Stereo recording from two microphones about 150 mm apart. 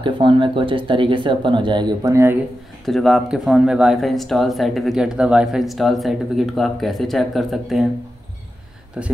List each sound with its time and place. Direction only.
0.0 s speech: 35° right (ahead or behind)
2.8 s speech: centre (ahead or behind)
9.0 s speech: 5° right (ahead or behind)